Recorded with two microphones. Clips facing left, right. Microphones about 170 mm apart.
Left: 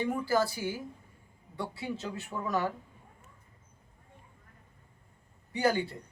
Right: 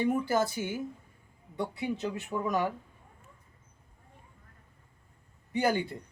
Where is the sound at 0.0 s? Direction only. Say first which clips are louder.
Right 1 dB; 20° right (ahead or behind).